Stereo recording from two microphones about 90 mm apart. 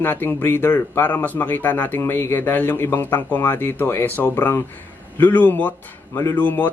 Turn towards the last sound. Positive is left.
turn(degrees=20)  # may be behind; listen again after turning